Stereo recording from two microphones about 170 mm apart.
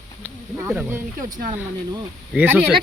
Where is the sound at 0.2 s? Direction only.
10° right (ahead or behind).